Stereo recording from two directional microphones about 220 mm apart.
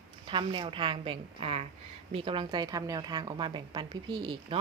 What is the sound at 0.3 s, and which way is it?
Speech, 20° right (ahead or behind).